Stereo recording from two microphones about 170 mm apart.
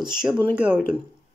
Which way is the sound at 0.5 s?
10° right (ahead or behind).